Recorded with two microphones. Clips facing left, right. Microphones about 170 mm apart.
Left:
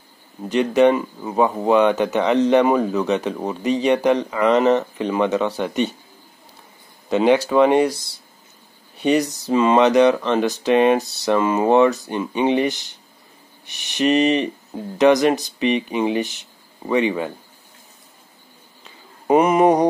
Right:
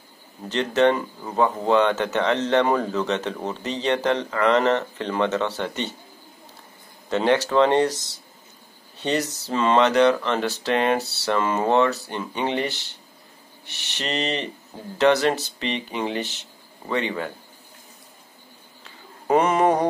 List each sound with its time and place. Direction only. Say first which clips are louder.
0.5 s speech: left 4 dB; 15° left (ahead or behind)
7.1 s speech: left 4 dB; 15° left (ahead or behind)
18.9 s mantra: left 4 dB; 15° left (ahead or behind)